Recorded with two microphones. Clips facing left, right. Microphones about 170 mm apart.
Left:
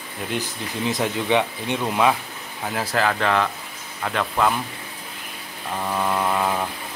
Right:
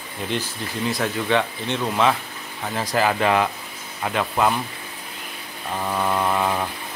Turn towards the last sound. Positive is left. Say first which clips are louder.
# even
turn(degrees=0)  # may be behind; listen again after turning